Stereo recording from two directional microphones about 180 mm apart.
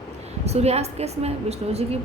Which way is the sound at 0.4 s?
35° right (ahead or behind).